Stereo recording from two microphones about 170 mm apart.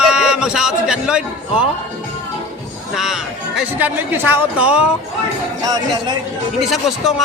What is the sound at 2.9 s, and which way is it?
Speech, centre (ahead or behind).